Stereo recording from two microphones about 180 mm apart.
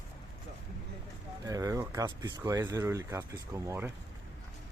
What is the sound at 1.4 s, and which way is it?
Speech, 20° right (ahead or behind).